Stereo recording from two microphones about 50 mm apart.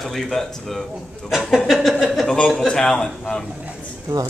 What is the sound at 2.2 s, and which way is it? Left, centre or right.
A man's voice, left.